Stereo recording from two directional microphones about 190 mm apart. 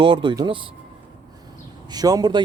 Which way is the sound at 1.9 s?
20° right (ahead or behind).